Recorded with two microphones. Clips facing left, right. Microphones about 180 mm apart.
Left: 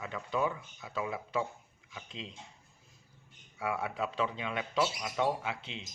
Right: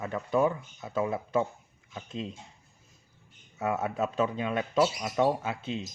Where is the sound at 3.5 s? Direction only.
45° right (ahead or behind).